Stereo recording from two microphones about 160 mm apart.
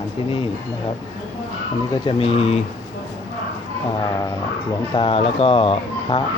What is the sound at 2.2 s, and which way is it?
Speech, 35° left (ahead or behind).